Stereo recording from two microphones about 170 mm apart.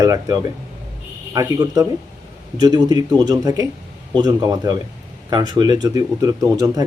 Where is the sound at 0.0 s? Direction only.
20° right (ahead or behind).